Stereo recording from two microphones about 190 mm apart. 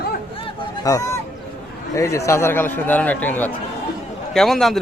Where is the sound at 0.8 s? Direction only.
15° left (ahead or behind).